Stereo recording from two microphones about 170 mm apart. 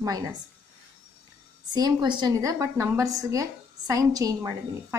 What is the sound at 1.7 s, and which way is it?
A woman's voice, 25° right (ahead or behind).